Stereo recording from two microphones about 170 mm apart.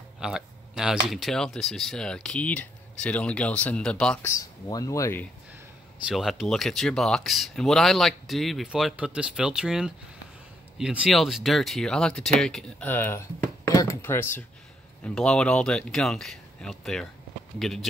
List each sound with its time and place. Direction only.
0.2 s speech: 5° right (ahead or behind)
4.3 s speech: 20° left (ahead or behind)
6.0 s speech: centre (ahead or behind)